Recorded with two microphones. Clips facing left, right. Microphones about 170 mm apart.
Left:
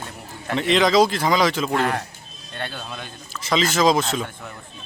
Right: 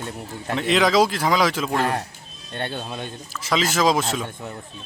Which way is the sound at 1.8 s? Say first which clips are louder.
Even; 30° right (ahead or behind).